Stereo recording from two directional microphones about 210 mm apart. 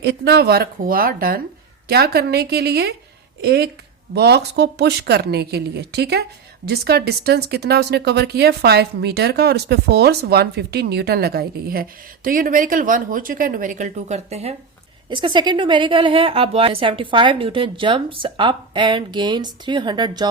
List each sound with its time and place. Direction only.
0.0 s a woman's voice: 50° right (ahead or behind); by 20.2 s 20° right (ahead or behind)